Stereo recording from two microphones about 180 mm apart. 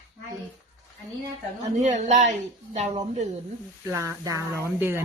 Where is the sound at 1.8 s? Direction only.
40° right (ahead or behind).